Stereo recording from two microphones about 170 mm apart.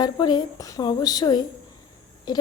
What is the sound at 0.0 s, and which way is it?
A woman's voice, 25° left (ahead or behind).